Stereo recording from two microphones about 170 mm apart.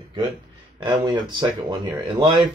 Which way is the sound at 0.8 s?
25° right (ahead or behind).